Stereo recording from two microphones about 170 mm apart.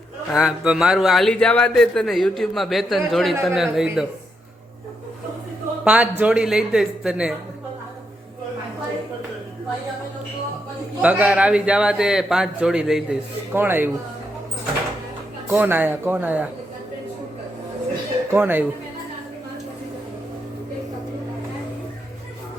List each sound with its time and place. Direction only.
0.3 s a man's voice: 5° right (ahead or behind)
5.8 s a man's voice: 10° right (ahead or behind)
11.0 s a man's voice: 10° right (ahead or behind)
15.4 s a man's voice: 10° right (ahead or behind)
18.3 s a man's voice: 10° right (ahead or behind)